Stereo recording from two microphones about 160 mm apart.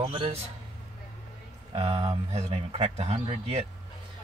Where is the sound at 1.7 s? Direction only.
35° right (ahead or behind).